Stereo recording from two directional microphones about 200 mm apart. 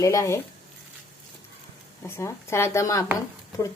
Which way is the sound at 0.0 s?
15° left (ahead or behind).